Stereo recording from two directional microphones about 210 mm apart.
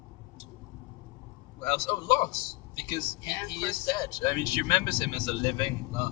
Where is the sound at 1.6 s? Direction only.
20° left (ahead or behind).